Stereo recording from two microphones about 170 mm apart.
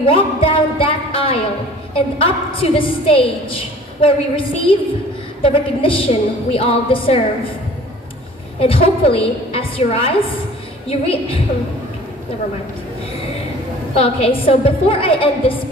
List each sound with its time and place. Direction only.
0.0 s music: 30° left (ahead or behind)
2.0 s a woman's voice: 35° left (ahead or behind)
8.5 s a woman's voice: 35° left (ahead or behind)
13.9 s a woman's voice: 35° left (ahead or behind)